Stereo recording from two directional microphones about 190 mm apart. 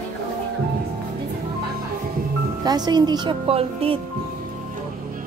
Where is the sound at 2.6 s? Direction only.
20° right (ahead or behind).